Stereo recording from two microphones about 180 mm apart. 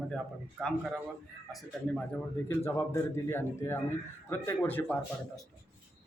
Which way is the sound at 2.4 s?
15° left (ahead or behind).